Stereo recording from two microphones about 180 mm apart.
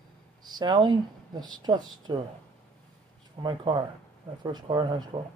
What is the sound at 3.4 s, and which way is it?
Speech, 25° right (ahead or behind).